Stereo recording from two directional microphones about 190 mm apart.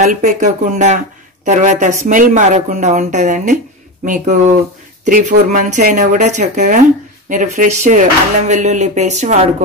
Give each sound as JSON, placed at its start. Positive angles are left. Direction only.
{"t": 0.0, "sound": "speech", "side_deg": -40}